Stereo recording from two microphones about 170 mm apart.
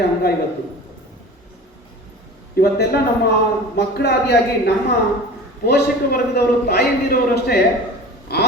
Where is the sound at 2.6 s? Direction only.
65° left (ahead or behind).